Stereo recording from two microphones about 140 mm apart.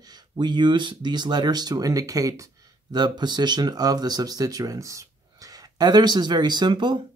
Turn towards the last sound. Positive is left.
turn(degrees=-35)  # may be behind; listen again after turning